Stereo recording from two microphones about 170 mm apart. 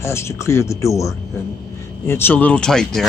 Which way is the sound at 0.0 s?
15° left (ahead or behind).